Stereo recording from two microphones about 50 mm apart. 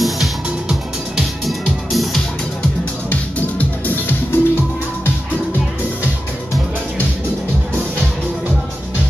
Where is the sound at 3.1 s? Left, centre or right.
Left.